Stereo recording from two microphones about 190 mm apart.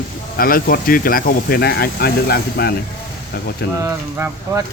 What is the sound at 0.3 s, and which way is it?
Speech, 50° left (ahead or behind).